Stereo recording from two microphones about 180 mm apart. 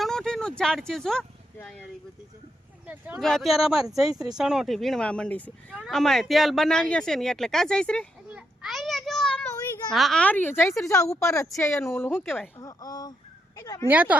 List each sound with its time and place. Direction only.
0.0 s a sound: 5° left (ahead or behind)
1.5 s speech: 5° left (ahead or behind)
2.8 s speech: 5° right (ahead or behind)
8.3 s a sound: 5° right (ahead or behind)
9.9 s speech: centre (ahead or behind); by 13.8 s 20° left (ahead or behind)
13.8 s speech: 10° right (ahead or behind)